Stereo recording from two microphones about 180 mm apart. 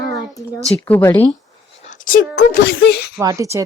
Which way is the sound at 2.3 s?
90° left.